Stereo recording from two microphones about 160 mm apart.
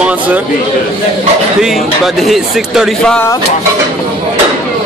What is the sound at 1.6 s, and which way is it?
Speech, centre (ahead or behind).